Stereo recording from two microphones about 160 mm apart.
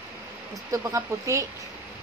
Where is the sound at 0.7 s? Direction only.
20° right (ahead or behind).